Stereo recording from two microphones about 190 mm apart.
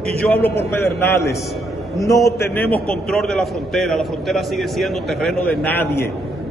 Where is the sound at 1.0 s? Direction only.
15° left (ahead or behind).